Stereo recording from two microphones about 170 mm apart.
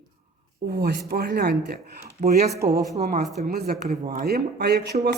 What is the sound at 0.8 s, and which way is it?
Speech, 65° right (ahead or behind).